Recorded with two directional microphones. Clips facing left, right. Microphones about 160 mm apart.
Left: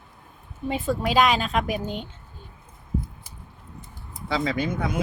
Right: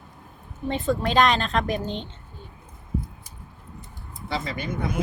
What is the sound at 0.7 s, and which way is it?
A woman's voice, 5° left (ahead or behind).